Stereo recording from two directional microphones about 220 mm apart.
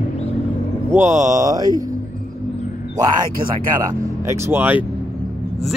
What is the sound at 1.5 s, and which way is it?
Speech, 15° right (ahead or behind).